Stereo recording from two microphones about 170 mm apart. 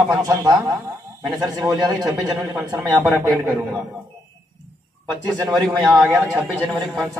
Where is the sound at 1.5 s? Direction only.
20° right (ahead or behind).